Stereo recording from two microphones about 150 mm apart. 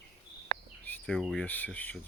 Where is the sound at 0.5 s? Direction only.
70° right (ahead or behind).